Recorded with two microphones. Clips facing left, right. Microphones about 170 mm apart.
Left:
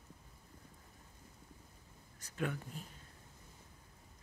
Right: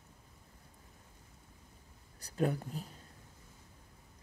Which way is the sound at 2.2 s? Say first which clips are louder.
Right 6 dB; 35° right (ahead or behind).